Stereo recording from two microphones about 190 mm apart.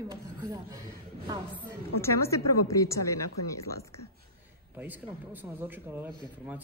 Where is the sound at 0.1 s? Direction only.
20° right (ahead or behind).